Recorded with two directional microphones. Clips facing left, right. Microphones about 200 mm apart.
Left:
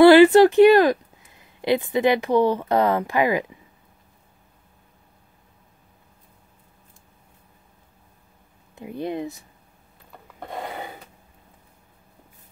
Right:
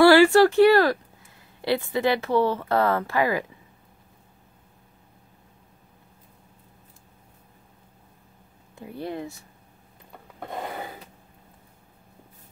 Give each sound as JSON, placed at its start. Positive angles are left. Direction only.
{"t": 0.0, "sound": "speech", "side_deg": 20}
{"t": 8.7, "sound": "speech", "side_deg": 20}